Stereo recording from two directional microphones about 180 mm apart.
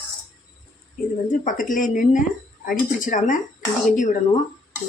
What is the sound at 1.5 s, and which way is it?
Speech, 45° left (ahead or behind).